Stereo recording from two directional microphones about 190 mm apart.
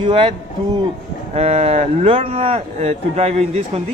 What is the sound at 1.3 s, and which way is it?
A man's voice, 35° right (ahead or behind).